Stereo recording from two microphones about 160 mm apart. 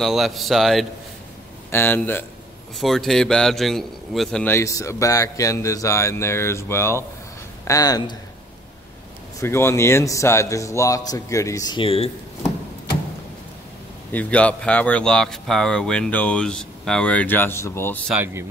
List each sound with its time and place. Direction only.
0.0 s a man's voice: centre (ahead or behind)
1.7 s speech: 15° left (ahead or behind)
2.8 s a man's voice: centre (ahead or behind)
4.6 s a man's voice: 20° left (ahead or behind)
9.4 s a man's voice: 15° left (ahead or behind); by 12.1 s 35° left (ahead or behind)
14.1 s speech: 10° left (ahead or behind)
18.1 s speech: 10° right (ahead or behind)